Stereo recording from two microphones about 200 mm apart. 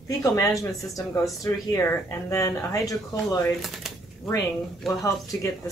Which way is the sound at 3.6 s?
Centre (ahead or behind).